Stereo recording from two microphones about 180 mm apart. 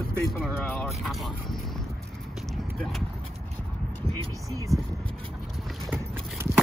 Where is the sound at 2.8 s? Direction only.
5° left (ahead or behind).